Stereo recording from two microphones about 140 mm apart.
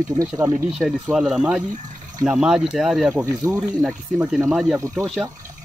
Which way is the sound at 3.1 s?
20° right (ahead or behind).